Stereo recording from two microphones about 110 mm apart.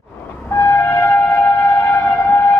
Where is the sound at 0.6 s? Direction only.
20° left (ahead or behind).